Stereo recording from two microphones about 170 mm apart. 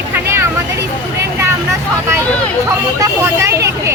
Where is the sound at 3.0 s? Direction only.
15° right (ahead or behind).